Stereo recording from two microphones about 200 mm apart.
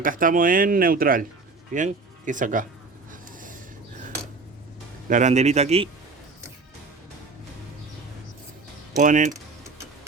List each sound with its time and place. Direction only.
0.0 s speech: 40° right (ahead or behind)
3.1 s a sound: 40° right (ahead or behind)
5.0 s a man's voice: 40° right (ahead or behind)
9.0 s a man's voice: 40° right (ahead or behind)